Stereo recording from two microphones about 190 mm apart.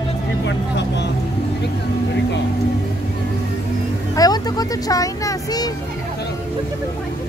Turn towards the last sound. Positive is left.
turn(degrees=20)  # may be behind; listen again after turning